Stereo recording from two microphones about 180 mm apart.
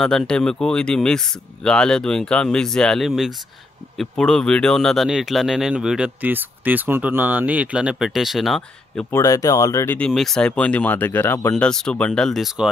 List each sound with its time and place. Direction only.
0.0 s speech: 5° left (ahead or behind)
9.1 s speech: 20° left (ahead or behind)
9.9 s speech: 5° left (ahead or behind)